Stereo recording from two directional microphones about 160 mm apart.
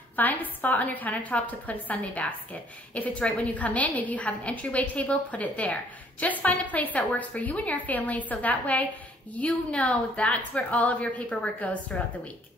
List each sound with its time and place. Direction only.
0.1 s a woman's voice: 10° left (ahead or behind)